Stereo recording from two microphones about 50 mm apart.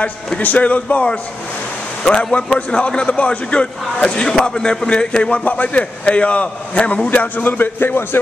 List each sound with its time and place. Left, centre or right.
0.4 s a man's voice: left